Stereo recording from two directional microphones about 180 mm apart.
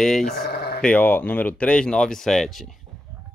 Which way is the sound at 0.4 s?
60° left (ahead or behind).